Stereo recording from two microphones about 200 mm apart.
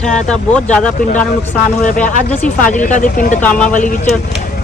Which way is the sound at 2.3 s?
40° left (ahead or behind).